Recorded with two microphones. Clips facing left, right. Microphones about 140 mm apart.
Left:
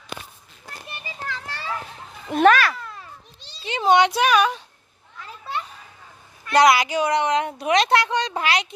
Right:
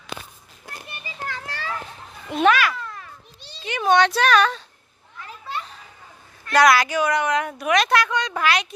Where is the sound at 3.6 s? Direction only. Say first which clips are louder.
Left 1 dB; 25° left (ahead or behind).